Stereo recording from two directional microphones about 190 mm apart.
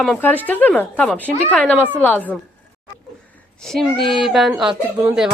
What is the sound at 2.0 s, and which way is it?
Speech, 10° left (ahead or behind).